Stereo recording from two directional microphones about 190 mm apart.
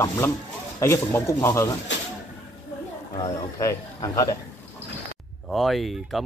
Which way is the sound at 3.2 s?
20° left (ahead or behind).